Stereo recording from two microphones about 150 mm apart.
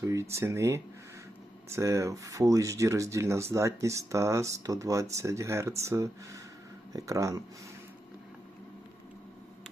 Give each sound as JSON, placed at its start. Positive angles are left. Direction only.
{"t": 0.0, "sound": "speech", "side_deg": -20}